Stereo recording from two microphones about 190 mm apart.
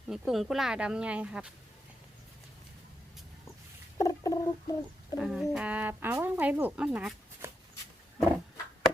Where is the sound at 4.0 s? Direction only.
20° left (ahead or behind).